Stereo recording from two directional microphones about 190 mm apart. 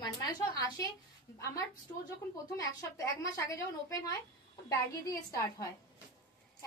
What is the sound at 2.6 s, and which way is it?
A woman's voice, 15° left (ahead or behind).